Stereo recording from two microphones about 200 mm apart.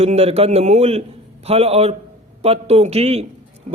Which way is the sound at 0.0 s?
30° right (ahead or behind).